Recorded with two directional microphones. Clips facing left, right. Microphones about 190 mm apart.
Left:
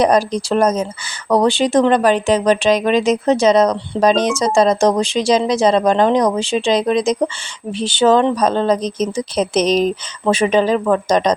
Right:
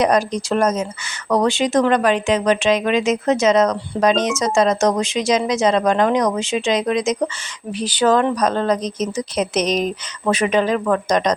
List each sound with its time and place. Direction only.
0.0 s speech: 30° left (ahead or behind)